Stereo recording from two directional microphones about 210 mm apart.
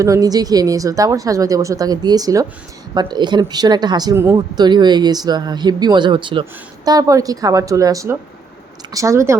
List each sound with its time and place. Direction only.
0.0 s a woman's voice: 15° right (ahead or behind)